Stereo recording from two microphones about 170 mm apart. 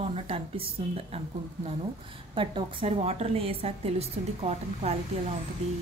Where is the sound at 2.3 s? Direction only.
30° right (ahead or behind).